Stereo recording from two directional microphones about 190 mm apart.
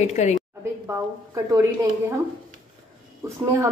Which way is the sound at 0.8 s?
15° right (ahead or behind).